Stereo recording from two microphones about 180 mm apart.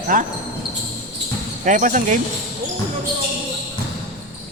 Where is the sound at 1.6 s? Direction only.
45° right (ahead or behind).